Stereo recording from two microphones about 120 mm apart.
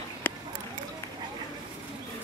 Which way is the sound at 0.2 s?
15° left (ahead or behind).